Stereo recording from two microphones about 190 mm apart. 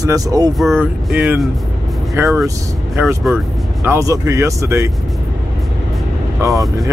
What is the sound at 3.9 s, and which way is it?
Speech, 15° right (ahead or behind).